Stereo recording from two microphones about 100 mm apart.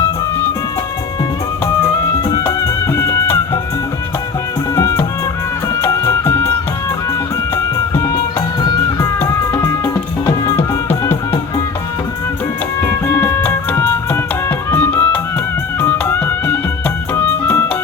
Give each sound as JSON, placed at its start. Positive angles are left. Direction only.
{"t": 2.6, "sound": "music", "side_deg": 30}
{"t": 4.7, "sound": "music", "side_deg": 30}
{"t": 8.0, "sound": "music", "side_deg": 30}
{"t": 10.6, "sound": "music", "side_deg": 25}
{"t": 12.8, "sound": "music", "side_deg": 20}